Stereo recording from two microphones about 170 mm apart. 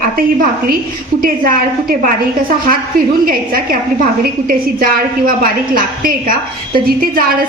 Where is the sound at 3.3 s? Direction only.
60° right (ahead or behind).